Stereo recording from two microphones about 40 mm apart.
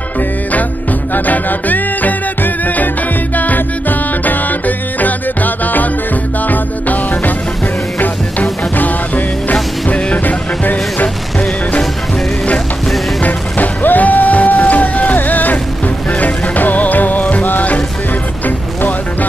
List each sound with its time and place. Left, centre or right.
1.1 s music: left
8.7 s music: left
13.2 s music: left